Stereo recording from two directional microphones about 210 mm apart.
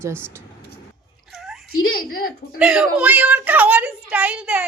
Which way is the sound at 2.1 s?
45° left (ahead or behind).